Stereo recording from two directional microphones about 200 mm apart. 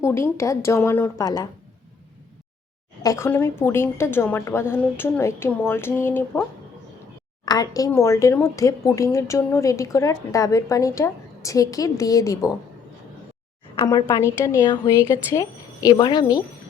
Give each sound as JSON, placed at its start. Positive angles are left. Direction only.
{"t": 0.0, "sound": "speech", "side_deg": 15}
{"t": 3.0, "sound": "speech", "side_deg": 15}
{"t": 7.4, "sound": "speech", "side_deg": 20}
{"t": 13.7, "sound": "a woman's voice", "side_deg": 20}